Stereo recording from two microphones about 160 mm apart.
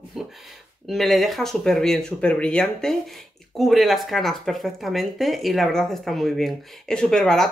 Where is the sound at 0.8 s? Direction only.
Centre (ahead or behind).